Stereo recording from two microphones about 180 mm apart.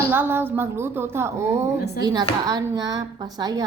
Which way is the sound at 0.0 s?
10° right (ahead or behind).